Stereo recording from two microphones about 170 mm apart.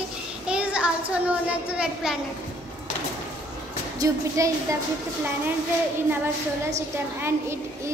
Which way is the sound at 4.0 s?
20° right (ahead or behind).